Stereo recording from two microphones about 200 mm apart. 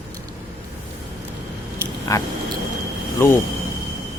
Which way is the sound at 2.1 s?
15° left (ahead or behind).